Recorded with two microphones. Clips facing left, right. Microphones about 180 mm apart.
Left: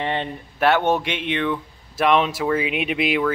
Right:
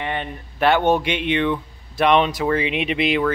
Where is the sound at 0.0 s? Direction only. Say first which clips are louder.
Left 2 dB; 30° left (ahead or behind).